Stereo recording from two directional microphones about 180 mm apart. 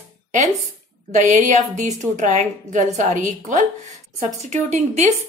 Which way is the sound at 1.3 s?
45° right (ahead or behind).